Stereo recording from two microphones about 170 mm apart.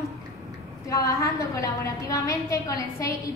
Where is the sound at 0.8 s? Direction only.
20° left (ahead or behind).